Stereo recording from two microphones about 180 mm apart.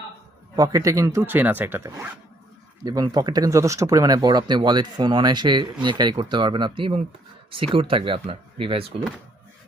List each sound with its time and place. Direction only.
0.5 s speech: 20° right (ahead or behind)